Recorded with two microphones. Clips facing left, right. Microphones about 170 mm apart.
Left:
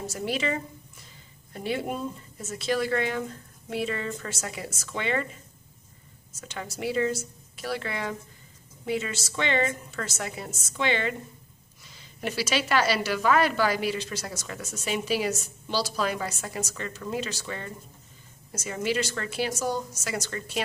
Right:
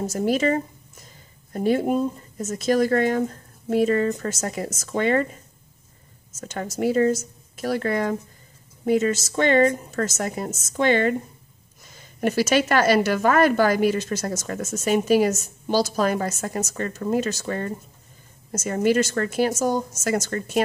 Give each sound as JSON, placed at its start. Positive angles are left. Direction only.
{"t": 0.0, "sound": "a woman's voice", "side_deg": -45}